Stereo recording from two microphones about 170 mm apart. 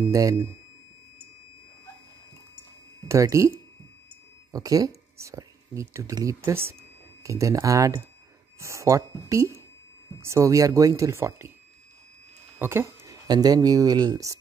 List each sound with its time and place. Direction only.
0.0 s speech: 20° right (ahead or behind)
3.1 s speech: 20° right (ahead or behind)
12.5 s speech: 15° right (ahead or behind)